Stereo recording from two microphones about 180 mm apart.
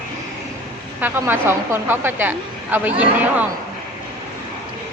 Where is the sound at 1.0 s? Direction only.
10° right (ahead or behind).